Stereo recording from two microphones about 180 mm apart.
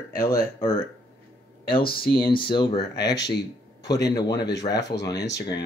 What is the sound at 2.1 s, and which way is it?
Speech, 30° left (ahead or behind).